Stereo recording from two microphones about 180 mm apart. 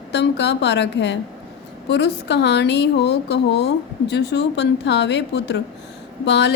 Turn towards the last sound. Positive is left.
turn(degrees=70)  # may be behind; listen again after turning